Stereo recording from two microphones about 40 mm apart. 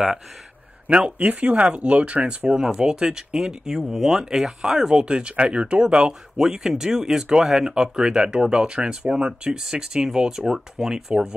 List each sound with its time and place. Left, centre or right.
0.8 s speech: right
2.2 s speech: right
6.3 s speech: centre